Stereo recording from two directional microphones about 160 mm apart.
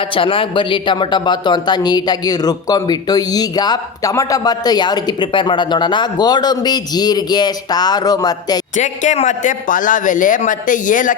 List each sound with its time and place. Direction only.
0.0 s speech: 35° left (ahead or behind)
8.7 s a man's voice: 50° left (ahead or behind)